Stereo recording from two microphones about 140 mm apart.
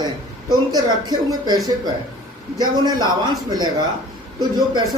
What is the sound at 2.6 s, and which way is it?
A man's voice, 30° right (ahead or behind).